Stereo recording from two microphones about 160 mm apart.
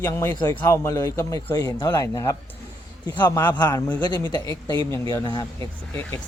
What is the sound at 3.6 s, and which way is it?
Speech, 25° left (ahead or behind).